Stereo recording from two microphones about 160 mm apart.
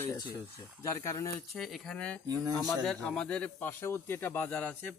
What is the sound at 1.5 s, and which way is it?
Speech, centre (ahead or behind).